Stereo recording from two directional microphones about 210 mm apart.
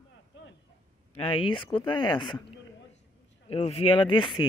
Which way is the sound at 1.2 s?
25° left (ahead or behind).